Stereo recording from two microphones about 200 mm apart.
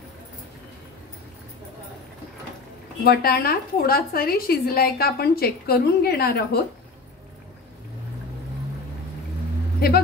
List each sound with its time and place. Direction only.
3.0 s a woman's voice: 50° left (ahead or behind)
9.8 s vehicle: 50° left (ahead or behind)